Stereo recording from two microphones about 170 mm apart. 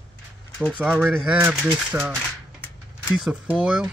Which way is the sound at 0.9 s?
5° right (ahead or behind).